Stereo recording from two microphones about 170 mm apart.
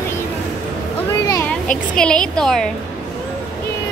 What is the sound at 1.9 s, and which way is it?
Speech, 5° left (ahead or behind).